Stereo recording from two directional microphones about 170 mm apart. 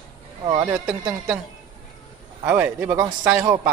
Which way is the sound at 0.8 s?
10° right (ahead or behind).